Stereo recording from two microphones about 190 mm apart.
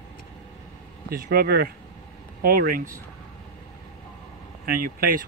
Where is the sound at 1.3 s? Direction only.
55° right (ahead or behind).